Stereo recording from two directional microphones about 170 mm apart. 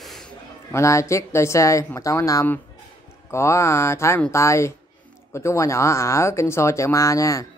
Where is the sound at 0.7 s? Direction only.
15° left (ahead or behind).